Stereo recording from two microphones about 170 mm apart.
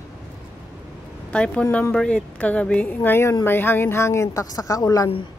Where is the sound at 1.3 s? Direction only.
5° left (ahead or behind).